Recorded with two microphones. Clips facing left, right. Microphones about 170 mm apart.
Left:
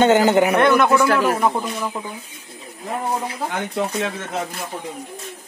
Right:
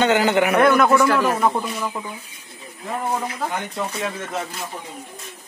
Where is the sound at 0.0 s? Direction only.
40° left (ahead or behind).